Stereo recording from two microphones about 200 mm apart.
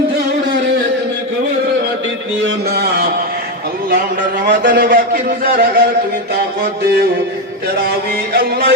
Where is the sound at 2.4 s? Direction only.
50° right (ahead or behind).